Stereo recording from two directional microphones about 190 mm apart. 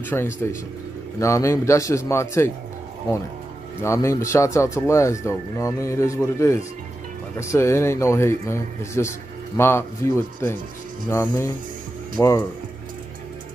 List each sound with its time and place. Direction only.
0.0 s speech: 10° left (ahead or behind)
3.8 s speech: 15° left (ahead or behind)